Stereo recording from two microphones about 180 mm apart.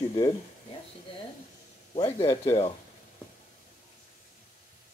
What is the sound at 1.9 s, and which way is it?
Speech, 35° left (ahead or behind).